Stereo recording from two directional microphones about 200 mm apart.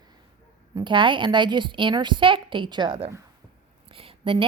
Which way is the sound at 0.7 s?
25° right (ahead or behind).